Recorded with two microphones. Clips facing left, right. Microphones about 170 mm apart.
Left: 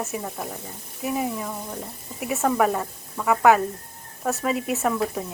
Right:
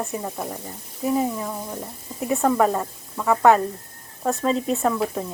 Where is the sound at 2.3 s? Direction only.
Centre (ahead or behind).